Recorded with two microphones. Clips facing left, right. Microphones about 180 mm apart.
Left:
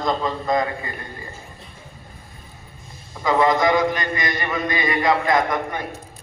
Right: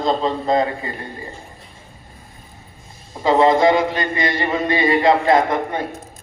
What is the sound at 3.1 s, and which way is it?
A man's voice, 25° right (ahead or behind).